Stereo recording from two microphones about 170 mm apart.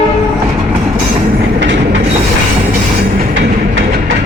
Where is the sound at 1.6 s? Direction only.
90° right.